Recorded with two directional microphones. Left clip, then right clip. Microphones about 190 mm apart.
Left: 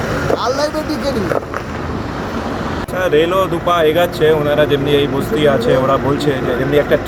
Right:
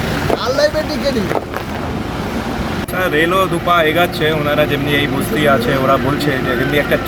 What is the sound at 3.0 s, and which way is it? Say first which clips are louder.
Speech: left 1 dB; 5° left (ahead or behind).